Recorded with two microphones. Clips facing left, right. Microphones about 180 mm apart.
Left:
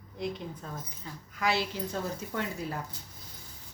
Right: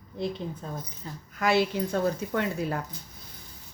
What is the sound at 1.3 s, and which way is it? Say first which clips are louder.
A woman's voice: right 6 dB; 50° right (ahead or behind).